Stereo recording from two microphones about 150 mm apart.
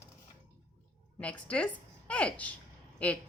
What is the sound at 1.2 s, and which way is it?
A woman's voice, 10° left (ahead or behind).